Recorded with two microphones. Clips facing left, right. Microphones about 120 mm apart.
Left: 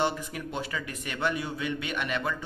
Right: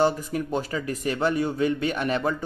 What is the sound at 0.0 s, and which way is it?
Speech, 40° right (ahead or behind).